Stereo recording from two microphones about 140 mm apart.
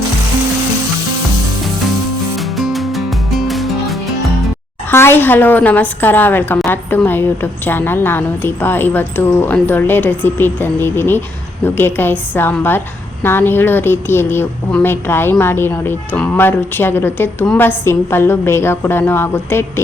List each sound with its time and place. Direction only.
2.6 s music: centre (ahead or behind)
4.9 s a woman's voice: 15° left (ahead or behind)